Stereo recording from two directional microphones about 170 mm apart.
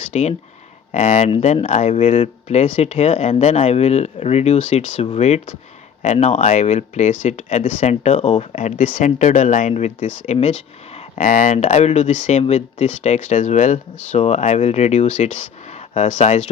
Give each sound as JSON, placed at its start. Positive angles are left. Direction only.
{"t": 0.1, "sound": "speech", "side_deg": 45}